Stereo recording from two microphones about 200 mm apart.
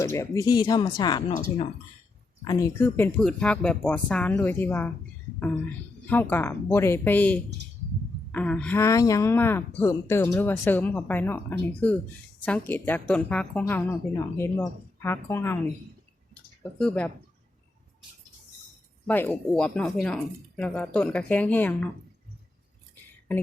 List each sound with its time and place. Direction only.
0.0 s speech: 15° left (ahead or behind)
2.4 s speech: 15° left (ahead or behind)
6.1 s speech: 10° left (ahead or behind)
16.3 s drip: 5° left (ahead or behind)
19.0 s speech: 10° left (ahead or behind)